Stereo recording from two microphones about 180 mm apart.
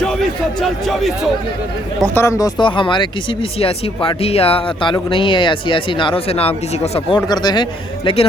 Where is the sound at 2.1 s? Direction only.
20° left (ahead or behind); by 7.2 s 35° left (ahead or behind).